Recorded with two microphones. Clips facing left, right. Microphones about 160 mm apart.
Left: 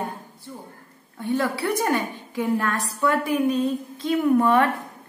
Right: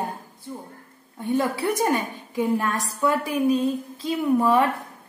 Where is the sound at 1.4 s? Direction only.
20° right (ahead or behind).